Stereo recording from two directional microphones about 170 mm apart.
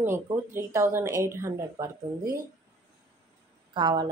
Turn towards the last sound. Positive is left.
turn(degrees=-25)  # may be behind; listen again after turning